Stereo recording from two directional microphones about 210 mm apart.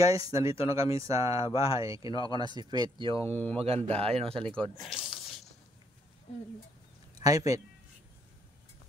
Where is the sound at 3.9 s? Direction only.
30° right (ahead or behind).